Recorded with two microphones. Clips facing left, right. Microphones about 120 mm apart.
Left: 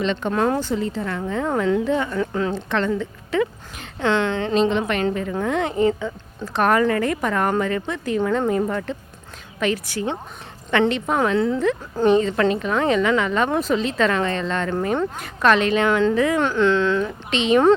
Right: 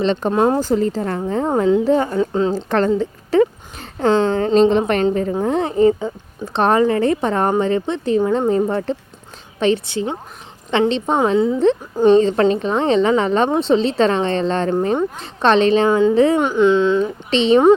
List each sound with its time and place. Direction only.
0.0 s a woman's voice: 35° right (ahead or behind)
0.6 s a woman's voice: 40° right (ahead or behind)
2.1 s a woman's voice: 25° right (ahead or behind)
2.6 s a woman's voice: 40° right (ahead or behind)
11.3 s speech: 15° right (ahead or behind)
12.0 s a woman's voice: 30° right (ahead or behind)
15.9 s speech: 15° right (ahead or behind)
16.1 s a woman's voice: 30° right (ahead or behind)
16.4 s speech: 15° right (ahead or behind)
17.3 s a woman's voice: 30° right (ahead or behind)